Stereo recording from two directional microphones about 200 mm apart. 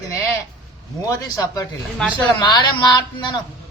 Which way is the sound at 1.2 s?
20° left (ahead or behind).